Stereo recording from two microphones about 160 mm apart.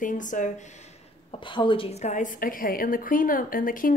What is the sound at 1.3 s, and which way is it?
A woman's voice, 30° left (ahead or behind).